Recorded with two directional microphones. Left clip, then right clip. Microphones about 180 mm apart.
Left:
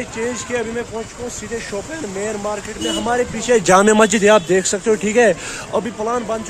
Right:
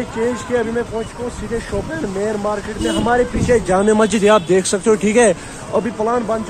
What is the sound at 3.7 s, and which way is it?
Speech, 80° left.